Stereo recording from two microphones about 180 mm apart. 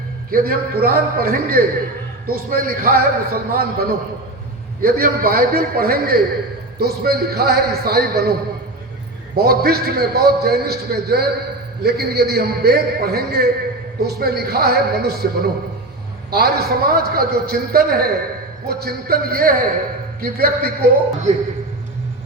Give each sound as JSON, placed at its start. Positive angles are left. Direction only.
{"t": 0.3, "sound": "a man's voice", "side_deg": -55}
{"t": 9.3, "sound": "a man's voice", "side_deg": -60}